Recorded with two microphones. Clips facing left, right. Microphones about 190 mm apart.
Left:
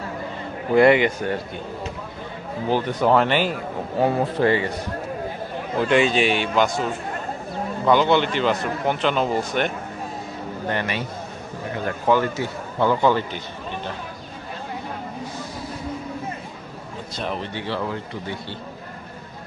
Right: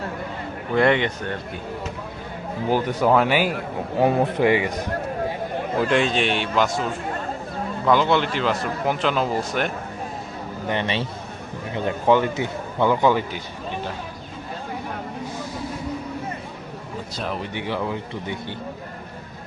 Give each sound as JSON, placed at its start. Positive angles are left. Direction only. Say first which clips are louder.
{"t": 0.8, "sound": "a man's voice", "louder": "left 4 dB", "side_deg": 5}
{"t": 2.6, "sound": "speech", "louder": "even", "side_deg": -10}
{"t": 5.7, "sound": "a man's voice", "louder": "left 2 dB", "side_deg": 0}
{"t": 7.9, "sound": "a man's voice", "louder": "left 1 dB", "side_deg": 0}
{"t": 10.7, "sound": "a man's voice", "louder": "right 2 dB", "side_deg": -25}
{"t": 17.2, "sound": "a man's voice", "louder": "left 1 dB", "side_deg": -5}
{"t": 17.5, "sound": "speech", "louder": "right 1 dB", "side_deg": -15}